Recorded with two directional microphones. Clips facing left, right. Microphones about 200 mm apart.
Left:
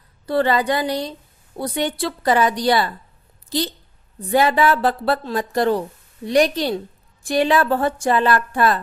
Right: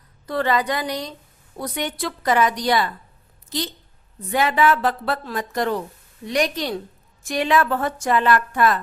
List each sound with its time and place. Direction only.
0.3 s a woman's voice: 30° left (ahead or behind)